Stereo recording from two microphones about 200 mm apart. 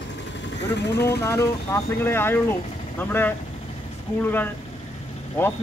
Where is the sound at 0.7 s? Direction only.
55° left (ahead or behind).